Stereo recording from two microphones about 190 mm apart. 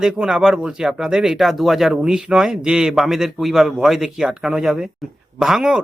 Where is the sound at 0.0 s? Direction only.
5° right (ahead or behind).